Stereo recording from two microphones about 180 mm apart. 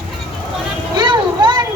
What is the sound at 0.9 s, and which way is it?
Vehicle, 25° right (ahead or behind).